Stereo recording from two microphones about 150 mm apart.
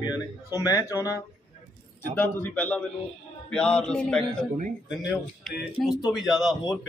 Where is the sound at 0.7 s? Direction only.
20° left (ahead or behind).